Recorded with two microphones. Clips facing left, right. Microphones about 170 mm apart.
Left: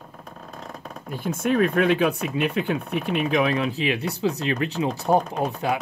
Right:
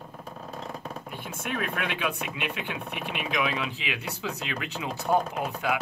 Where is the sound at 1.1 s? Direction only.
40° left (ahead or behind).